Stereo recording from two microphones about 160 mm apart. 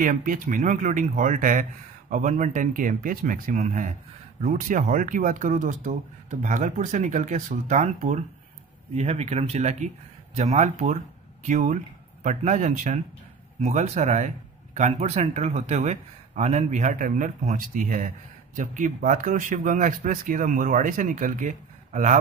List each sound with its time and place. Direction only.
0.0 s speech: 55° right (ahead or behind)
3.5 s speech: 50° right (ahead or behind)